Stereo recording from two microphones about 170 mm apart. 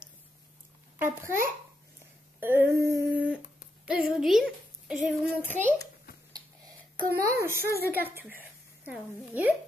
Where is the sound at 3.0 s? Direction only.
5° right (ahead or behind).